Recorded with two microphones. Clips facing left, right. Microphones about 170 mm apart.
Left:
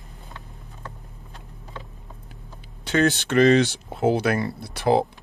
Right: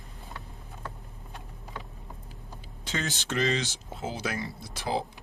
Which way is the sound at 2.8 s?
65° left (ahead or behind).